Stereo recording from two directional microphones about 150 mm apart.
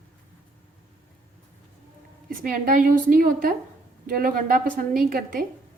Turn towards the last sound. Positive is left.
turn(degrees=-70)  # may be behind; listen again after turning